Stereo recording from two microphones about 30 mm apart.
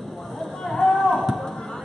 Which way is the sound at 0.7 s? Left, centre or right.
Centre.